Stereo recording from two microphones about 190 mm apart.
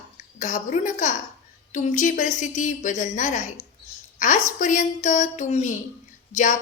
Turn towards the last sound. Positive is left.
turn(degrees=40)  # may be behind; listen again after turning